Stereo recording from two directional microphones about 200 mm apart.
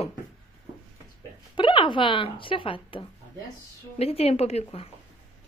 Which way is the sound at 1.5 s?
25° left (ahead or behind).